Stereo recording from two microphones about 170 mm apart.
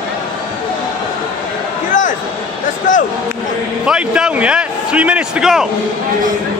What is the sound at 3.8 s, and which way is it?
A man's voice, 5° right (ahead or behind).